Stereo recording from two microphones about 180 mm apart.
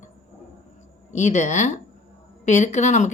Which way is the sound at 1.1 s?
40° left (ahead or behind).